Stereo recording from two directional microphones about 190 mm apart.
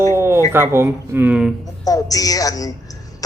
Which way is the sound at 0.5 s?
10° right (ahead or behind).